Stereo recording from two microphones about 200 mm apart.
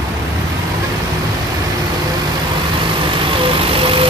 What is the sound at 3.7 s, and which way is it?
Vehicle, 25° right (ahead or behind).